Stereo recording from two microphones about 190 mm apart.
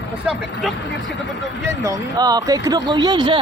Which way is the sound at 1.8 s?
20° right (ahead or behind).